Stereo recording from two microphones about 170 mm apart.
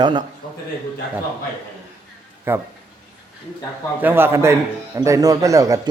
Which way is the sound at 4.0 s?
10° right (ahead or behind).